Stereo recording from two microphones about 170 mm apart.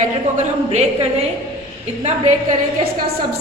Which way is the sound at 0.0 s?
40° right (ahead or behind).